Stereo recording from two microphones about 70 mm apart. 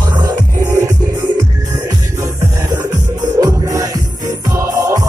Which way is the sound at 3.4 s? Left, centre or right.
Right.